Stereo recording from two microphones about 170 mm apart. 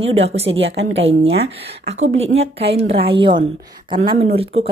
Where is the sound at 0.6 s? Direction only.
90° right.